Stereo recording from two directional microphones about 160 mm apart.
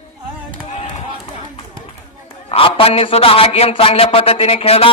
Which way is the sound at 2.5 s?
35° left (ahead or behind).